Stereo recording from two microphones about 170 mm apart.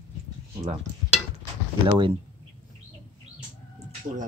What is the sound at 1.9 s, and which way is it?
Speech, 30° right (ahead or behind).